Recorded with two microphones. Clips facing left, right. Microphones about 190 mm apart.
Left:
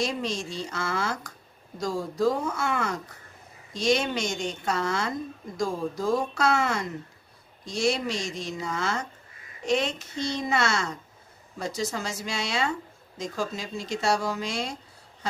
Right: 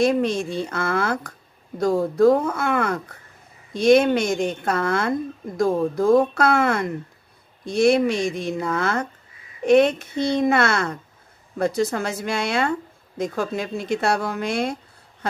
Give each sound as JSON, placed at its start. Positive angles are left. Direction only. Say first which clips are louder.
{"t": 0.0, "sound": "speech", "louder": "right 10 dB", "side_deg": -55}